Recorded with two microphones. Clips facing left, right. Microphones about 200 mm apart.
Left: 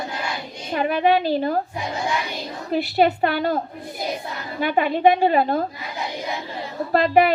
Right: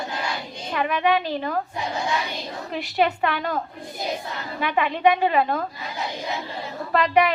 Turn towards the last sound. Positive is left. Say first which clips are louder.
# left 3 dB
turn(degrees=40)  # may be behind; listen again after turning